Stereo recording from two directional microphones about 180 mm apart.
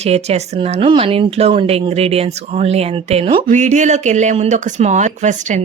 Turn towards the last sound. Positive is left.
turn(degrees=-40)  # may be behind; listen again after turning